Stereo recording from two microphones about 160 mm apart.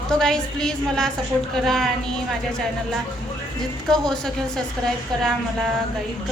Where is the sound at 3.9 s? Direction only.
5° left (ahead or behind).